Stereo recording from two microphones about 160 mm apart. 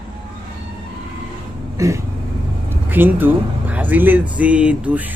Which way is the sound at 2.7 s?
10° right (ahead or behind).